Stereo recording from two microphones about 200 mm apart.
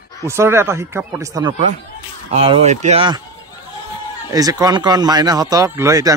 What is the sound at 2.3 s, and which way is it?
Speech, 30° right (ahead or behind).